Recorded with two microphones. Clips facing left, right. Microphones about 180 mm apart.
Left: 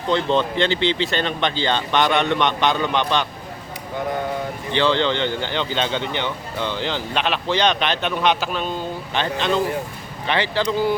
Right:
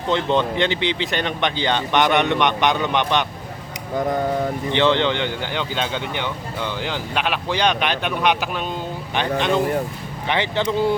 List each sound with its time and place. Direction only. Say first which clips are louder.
0.1 s speech: even; 15° right (ahead or behind)
4.7 s speech: even; 20° right (ahead or behind)